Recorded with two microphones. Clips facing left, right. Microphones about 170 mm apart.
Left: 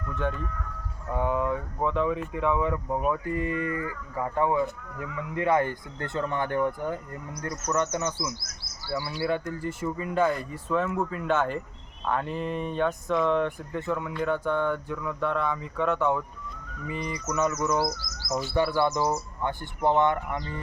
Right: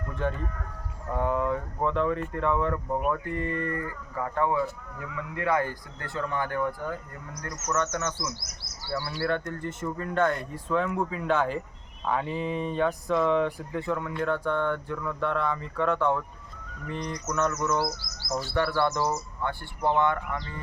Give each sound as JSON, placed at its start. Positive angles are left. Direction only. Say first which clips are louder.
{"t": 0.3, "sound": "speech", "louder": "even", "side_deg": -45}
{"t": 1.1, "sound": "speech", "louder": "even", "side_deg": 0}
{"t": 7.4, "sound": "speech", "louder": "left 5 dB", "side_deg": 35}
{"t": 7.7, "sound": "speech", "louder": "left 1 dB", "side_deg": 15}